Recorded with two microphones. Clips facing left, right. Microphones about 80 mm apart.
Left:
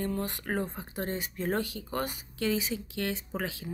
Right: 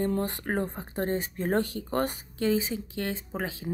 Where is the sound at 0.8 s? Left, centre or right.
Right.